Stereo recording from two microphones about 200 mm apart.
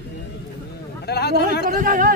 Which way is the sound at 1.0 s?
55° left (ahead or behind).